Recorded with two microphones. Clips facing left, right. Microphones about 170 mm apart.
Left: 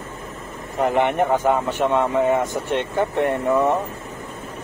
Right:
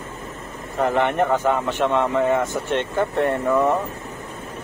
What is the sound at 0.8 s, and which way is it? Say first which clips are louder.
Speech: left 1 dB; 15° left (ahead or behind).